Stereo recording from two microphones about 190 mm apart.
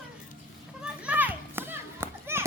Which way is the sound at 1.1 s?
10° right (ahead or behind).